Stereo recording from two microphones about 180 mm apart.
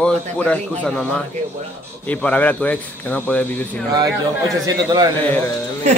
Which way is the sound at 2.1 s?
10° left (ahead or behind).